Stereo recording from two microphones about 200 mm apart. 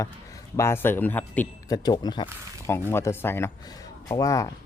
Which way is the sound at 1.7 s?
20° left (ahead or behind).